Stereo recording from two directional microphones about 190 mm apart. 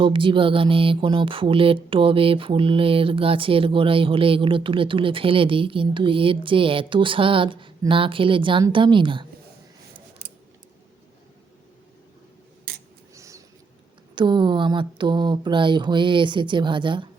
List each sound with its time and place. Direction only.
0.0 s music: 25° right (ahead or behind)
13.1 s a sound: 15° right (ahead or behind)
14.2 s music: 25° right (ahead or behind)